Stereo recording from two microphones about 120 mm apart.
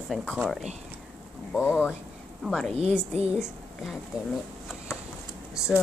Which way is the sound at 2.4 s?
5° left (ahead or behind).